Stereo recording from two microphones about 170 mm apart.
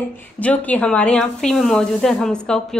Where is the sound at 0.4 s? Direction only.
10° left (ahead or behind).